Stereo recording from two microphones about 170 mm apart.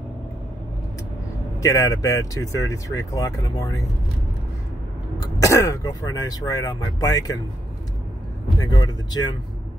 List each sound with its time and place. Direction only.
1.6 s speech: 20° left (ahead or behind)
5.2 s speech: 20° left (ahead or behind)
8.5 s speech: 20° left (ahead or behind)